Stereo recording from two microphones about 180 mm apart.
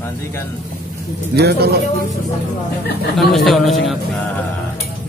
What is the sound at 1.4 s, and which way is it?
Speech, 65° right (ahead or behind).